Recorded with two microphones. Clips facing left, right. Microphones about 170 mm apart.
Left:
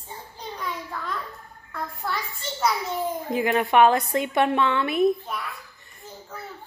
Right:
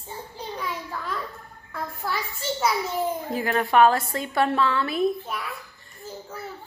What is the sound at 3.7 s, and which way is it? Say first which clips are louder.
A woman's voice: even; 20° left (ahead or behind).